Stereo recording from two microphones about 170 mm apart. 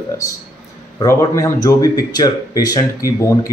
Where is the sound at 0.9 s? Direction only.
20° left (ahead or behind).